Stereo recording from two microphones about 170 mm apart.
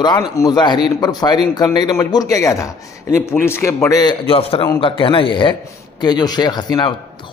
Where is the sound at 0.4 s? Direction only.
25° left (ahead or behind).